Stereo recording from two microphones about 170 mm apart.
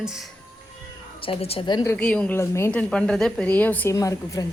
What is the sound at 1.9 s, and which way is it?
Speech, 5° left (ahead or behind).